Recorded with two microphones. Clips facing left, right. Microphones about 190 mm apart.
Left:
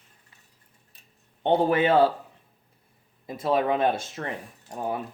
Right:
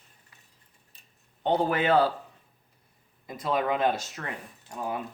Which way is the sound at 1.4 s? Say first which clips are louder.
Left 4 dB; 25° left (ahead or behind).